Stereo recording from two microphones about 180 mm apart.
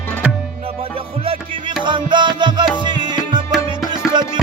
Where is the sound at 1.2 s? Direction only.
30° right (ahead or behind).